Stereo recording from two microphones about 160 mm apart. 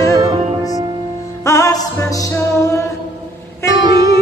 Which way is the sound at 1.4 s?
20° left (ahead or behind).